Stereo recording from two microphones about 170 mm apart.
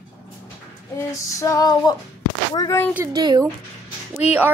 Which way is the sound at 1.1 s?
20° left (ahead or behind).